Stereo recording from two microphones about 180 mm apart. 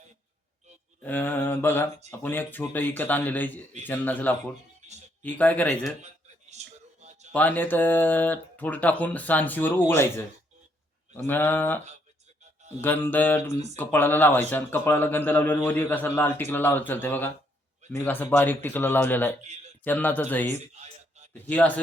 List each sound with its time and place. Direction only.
1.0 s speech: 10° left (ahead or behind)
6.5 s a man's voice: 40° right (ahead or behind)
7.3 s speech: 10° left (ahead or behind)
12.8 s speech: 10° left (ahead or behind)